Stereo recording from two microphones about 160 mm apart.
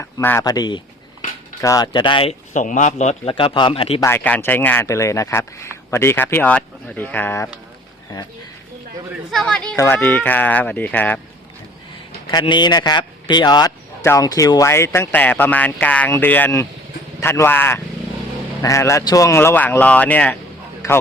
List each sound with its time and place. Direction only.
0.0 s a man's voice: 15° left (ahead or behind); by 2.3 s 30° left (ahead or behind)
2.5 s a man's voice: 50° left (ahead or behind)
4.0 s speech: 10° left (ahead or behind)
9.3 s speech: 5° left (ahead or behind)
12.3 s a man's voice: 30° left (ahead or behind); by 20.3 s 10° left (ahead or behind)